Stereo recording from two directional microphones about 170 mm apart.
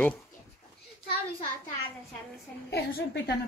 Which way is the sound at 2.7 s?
75° left (ahead or behind).